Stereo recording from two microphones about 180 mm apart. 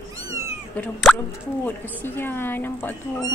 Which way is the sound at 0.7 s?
5° left (ahead or behind).